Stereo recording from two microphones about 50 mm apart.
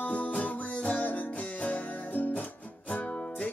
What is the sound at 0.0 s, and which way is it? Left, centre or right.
Music, left.